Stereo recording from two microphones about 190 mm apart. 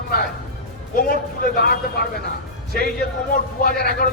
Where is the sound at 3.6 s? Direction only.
50° left (ahead or behind).